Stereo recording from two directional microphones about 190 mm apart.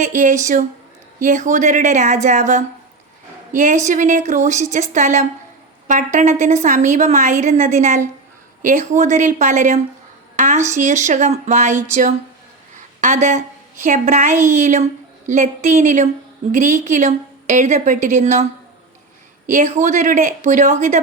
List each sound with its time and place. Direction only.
0.0 s a woman's voice: 40° right (ahead or behind)
13.0 s a woman's voice: 40° right (ahead or behind)
19.5 s speech: 40° right (ahead or behind)